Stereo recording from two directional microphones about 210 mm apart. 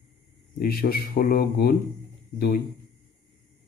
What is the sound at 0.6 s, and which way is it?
Speech, 45° left (ahead or behind).